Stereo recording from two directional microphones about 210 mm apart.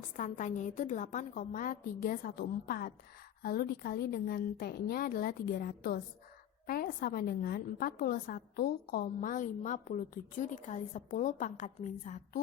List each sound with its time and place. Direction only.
0.2 s a woman's voice: 35° left (ahead or behind)